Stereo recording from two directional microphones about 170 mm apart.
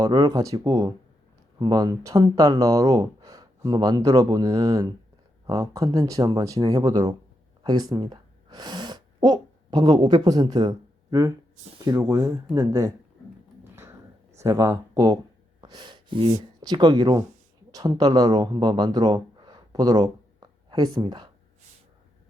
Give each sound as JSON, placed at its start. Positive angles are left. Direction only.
{"t": 0.0, "sound": "speech", "side_deg": -20}
{"t": 14.3, "sound": "speech", "side_deg": -15}